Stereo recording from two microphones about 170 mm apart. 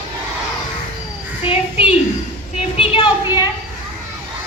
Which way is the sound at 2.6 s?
30° left (ahead or behind).